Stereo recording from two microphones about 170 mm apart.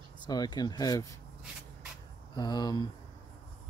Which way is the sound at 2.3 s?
25° left (ahead or behind).